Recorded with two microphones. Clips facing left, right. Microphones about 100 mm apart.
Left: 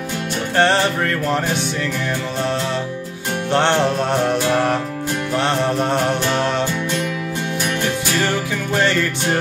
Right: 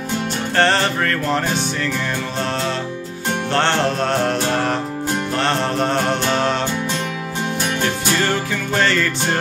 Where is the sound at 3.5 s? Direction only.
15° left (ahead or behind).